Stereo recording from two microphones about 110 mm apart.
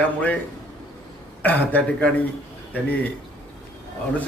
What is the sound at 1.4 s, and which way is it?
Speech, 15° left (ahead or behind).